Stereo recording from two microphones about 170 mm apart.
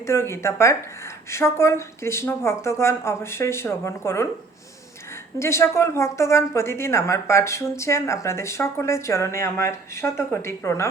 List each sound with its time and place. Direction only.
0.1 s a woman's voice: 15° left (ahead or behind)
5.4 s a woman's voice: 15° left (ahead or behind)